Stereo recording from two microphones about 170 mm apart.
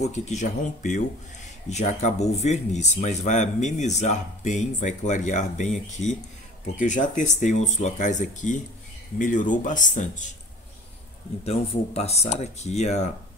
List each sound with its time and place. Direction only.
0.0 s speech: 40° left (ahead or behind)
11.4 s speech: 35° left (ahead or behind)